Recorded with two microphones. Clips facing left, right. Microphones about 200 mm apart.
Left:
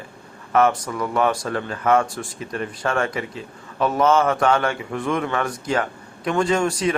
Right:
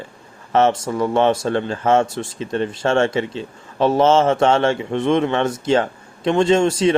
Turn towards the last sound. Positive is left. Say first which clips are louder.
# right 5 dB
turn(degrees=-25)  # may be behind; listen again after turning